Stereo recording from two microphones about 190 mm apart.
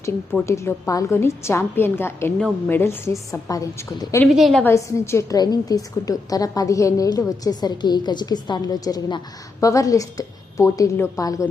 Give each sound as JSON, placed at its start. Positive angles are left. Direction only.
{"t": 0.0, "sound": "a woman's voice", "side_deg": 15}
{"t": 4.4, "sound": "a woman's voice", "side_deg": 0}
{"t": 4.6, "sound": "a woman's voice", "side_deg": 15}